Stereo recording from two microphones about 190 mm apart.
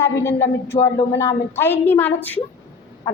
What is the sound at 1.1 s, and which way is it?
Speech, 15° left (ahead or behind).